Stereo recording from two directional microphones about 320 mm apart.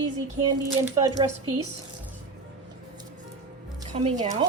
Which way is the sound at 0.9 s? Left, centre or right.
Centre.